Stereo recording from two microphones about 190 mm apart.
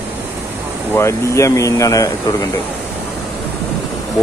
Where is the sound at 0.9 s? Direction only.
15° left (ahead or behind).